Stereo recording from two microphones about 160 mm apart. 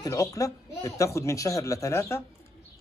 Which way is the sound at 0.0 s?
20° left (ahead or behind).